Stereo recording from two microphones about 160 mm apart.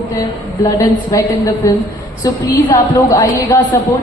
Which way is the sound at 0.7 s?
20° left (ahead or behind).